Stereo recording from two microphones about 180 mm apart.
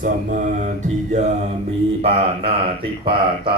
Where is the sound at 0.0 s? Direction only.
45° right (ahead or behind).